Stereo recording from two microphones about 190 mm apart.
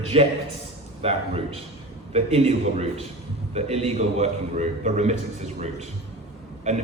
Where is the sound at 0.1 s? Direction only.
30° right (ahead or behind).